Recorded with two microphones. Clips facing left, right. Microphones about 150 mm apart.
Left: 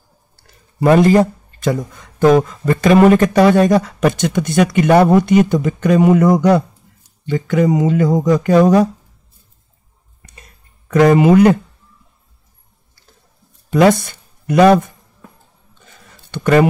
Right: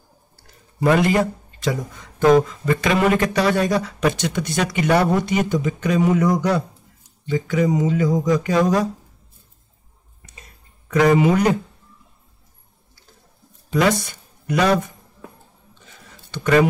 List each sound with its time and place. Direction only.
0.9 s speech: 35° left (ahead or behind)
1.6 s speech: 55° left (ahead or behind)
10.9 s speech: 50° left (ahead or behind)
13.7 s speech: 50° left (ahead or behind)
16.3 s a man's voice: 50° left (ahead or behind)